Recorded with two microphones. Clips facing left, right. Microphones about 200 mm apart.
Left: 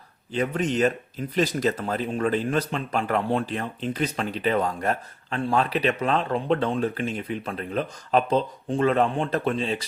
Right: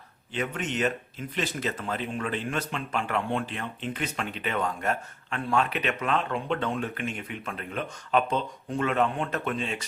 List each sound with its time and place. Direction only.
0.3 s speech: 35° left (ahead or behind)